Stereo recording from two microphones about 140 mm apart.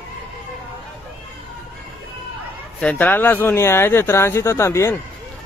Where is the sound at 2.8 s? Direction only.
10° left (ahead or behind).